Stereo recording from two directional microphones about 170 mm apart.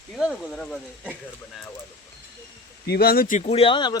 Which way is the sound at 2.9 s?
65° left (ahead or behind).